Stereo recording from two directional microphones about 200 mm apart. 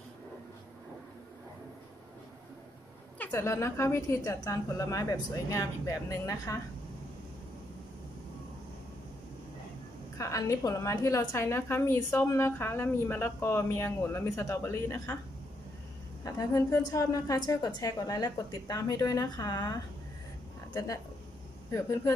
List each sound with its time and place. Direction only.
3.2 s a woman's voice: 15° left (ahead or behind)
10.1 s a woman's voice: 15° left (ahead or behind)
16.3 s a woman's voice: 15° left (ahead or behind)